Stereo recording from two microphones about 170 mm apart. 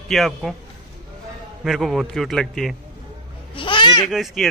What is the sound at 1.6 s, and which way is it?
A man's voice, centre (ahead or behind).